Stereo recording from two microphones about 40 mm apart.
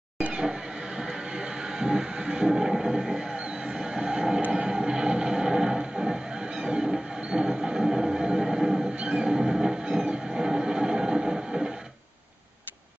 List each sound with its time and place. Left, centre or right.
0.3 s a sound: centre
2.7 s neigh: centre
4.6 s music: right
6.6 s train: right